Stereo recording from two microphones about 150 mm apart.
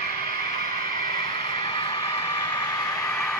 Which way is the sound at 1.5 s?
35° left (ahead or behind).